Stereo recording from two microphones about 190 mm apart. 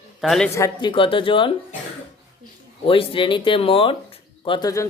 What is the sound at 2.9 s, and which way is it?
Speech, 25° left (ahead or behind).